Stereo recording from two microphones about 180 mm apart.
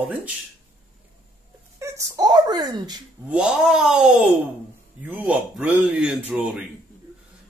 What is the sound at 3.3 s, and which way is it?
Speech, 5° right (ahead or behind).